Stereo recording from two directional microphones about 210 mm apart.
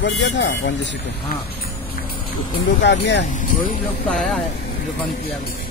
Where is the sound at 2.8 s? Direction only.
55° left (ahead or behind).